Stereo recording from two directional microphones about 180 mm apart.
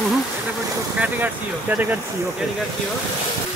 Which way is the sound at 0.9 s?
10° right (ahead or behind).